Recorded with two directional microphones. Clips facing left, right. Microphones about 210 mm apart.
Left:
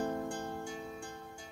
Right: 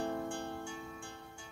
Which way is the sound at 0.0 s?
40° left (ahead or behind).